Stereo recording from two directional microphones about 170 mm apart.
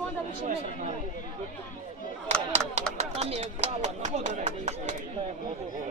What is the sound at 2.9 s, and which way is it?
Speech, 40° right (ahead or behind).